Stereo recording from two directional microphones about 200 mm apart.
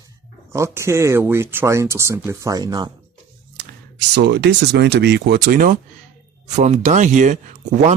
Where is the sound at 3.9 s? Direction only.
60° right (ahead or behind).